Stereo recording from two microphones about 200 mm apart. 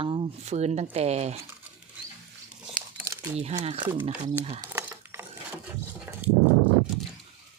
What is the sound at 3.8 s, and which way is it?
Speech, 10° right (ahead or behind).